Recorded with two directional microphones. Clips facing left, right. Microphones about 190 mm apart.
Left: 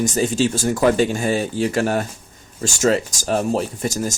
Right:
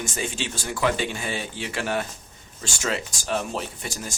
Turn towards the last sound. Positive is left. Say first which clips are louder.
# left 11 dB
turn(degrees=40)  # may be behind; listen again after turning